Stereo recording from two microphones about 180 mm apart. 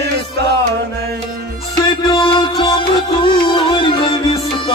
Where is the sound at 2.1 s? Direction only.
25° left (ahead or behind).